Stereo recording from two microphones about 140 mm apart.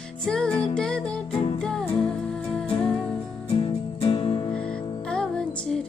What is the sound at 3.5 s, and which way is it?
Music, 40° left (ahead or behind).